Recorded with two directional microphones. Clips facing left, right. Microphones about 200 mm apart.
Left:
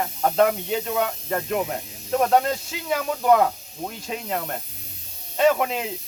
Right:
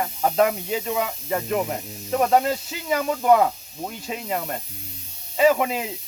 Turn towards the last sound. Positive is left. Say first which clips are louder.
# right 1 dB
turn(degrees=0)  # may be behind; listen again after turning